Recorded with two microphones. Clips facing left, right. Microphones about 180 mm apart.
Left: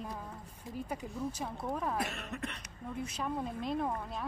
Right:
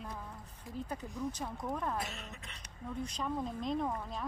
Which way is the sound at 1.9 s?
60° left (ahead or behind).